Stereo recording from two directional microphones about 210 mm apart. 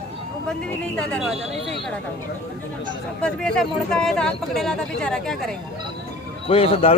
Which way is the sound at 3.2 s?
5° left (ahead or behind).